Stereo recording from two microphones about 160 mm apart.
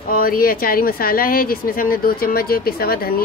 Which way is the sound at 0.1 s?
65° left (ahead or behind).